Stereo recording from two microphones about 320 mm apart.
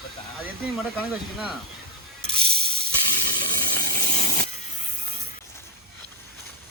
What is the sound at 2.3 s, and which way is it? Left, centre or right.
Ratchet, right.